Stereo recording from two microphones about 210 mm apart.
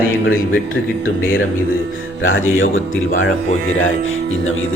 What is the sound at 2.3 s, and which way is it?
A man's voice, 70° left (ahead or behind).